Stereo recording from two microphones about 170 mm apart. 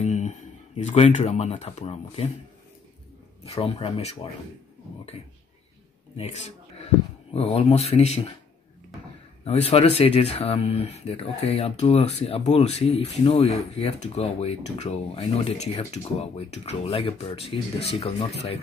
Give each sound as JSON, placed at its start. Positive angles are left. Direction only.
{"t": 0.0, "sound": "speech", "side_deg": 45}
{"t": 3.4, "sound": "speech", "side_deg": 35}
{"t": 6.1, "sound": "a sound", "side_deg": 40}
{"t": 7.3, "sound": "speech", "side_deg": 35}
{"t": 9.4, "sound": "speech", "side_deg": 35}